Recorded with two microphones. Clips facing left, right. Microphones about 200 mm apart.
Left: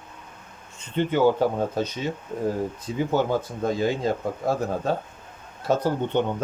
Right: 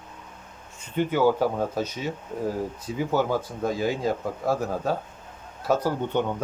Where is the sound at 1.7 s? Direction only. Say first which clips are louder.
Left 2 dB; 5° right (ahead or behind).